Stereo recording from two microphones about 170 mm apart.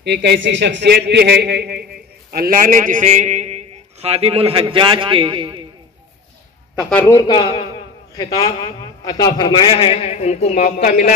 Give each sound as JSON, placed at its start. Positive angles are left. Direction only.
{"t": 0.0, "sound": "a man's voice", "side_deg": -85}
{"t": 2.3, "sound": "a man's voice", "side_deg": -60}
{"t": 6.9, "sound": "a man's voice", "side_deg": 10}
{"t": 7.2, "sound": "a man's voice", "side_deg": 25}